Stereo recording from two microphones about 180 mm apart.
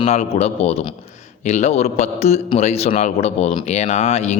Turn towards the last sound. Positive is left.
turn(degrees=35)  # may be behind; listen again after turning